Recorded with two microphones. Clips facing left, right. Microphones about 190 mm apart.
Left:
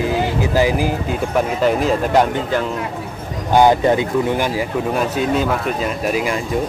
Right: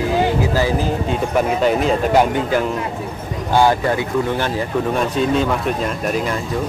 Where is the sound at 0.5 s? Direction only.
15° left (ahead or behind).